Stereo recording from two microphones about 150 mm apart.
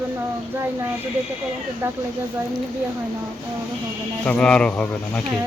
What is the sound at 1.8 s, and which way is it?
Speech, 15° right (ahead or behind).